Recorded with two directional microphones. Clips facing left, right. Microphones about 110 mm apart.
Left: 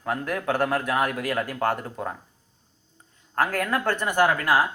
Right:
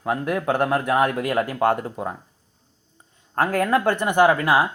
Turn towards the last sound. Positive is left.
turn(degrees=-25)  # may be behind; listen again after turning